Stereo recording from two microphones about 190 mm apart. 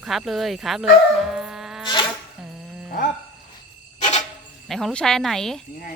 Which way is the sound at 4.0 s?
40° left (ahead or behind).